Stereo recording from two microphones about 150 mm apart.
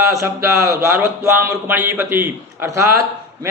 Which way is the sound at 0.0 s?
20° right (ahead or behind).